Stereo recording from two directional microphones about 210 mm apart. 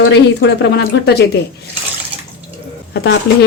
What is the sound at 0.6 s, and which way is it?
Speech, 55° left (ahead or behind).